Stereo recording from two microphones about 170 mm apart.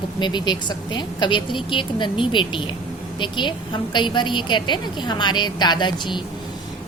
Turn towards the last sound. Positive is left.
turn(degrees=25)  # may be behind; listen again after turning